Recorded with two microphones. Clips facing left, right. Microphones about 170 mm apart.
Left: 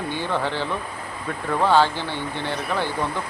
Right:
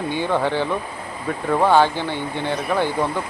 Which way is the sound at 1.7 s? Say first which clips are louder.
Right 1 dB; 15° right (ahead or behind).